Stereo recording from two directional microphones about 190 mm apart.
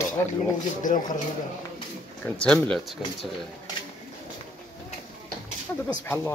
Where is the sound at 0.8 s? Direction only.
45° left (ahead or behind).